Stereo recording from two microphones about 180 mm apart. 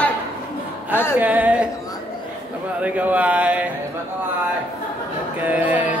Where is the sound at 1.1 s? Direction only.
10° right (ahead or behind).